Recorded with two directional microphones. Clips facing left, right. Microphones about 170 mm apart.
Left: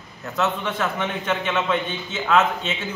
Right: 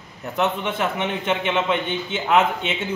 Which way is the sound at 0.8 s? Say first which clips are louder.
Right 2 dB; 25° right (ahead or behind).